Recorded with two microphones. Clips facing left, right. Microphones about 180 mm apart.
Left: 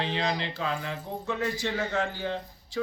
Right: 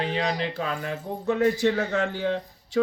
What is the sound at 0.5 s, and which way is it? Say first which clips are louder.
Speech: right 2 dB; 50° right (ahead or behind).